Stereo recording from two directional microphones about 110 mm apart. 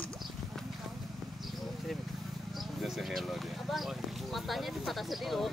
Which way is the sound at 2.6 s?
Centre (ahead or behind).